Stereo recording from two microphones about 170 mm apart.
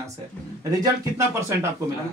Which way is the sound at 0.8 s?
15° right (ahead or behind).